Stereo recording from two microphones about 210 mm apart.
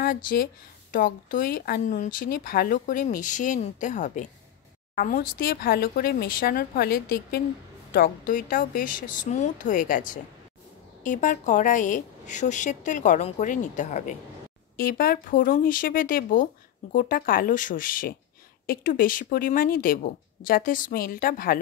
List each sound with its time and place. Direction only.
0.0 s speech: 45° left (ahead or behind)